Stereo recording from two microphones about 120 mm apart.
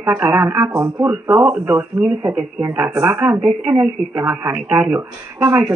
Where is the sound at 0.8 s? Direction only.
20° right (ahead or behind).